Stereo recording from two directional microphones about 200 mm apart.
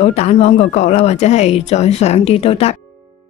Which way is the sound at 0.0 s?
35° left (ahead or behind).